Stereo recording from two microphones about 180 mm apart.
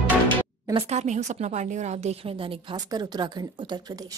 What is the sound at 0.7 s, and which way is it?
A woman's voice, 40° right (ahead or behind).